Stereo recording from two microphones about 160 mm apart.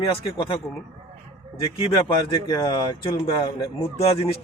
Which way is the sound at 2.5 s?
25° left (ahead or behind).